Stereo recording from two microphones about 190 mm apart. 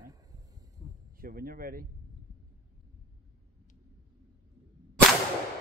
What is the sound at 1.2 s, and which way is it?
Speech, 50° right (ahead or behind).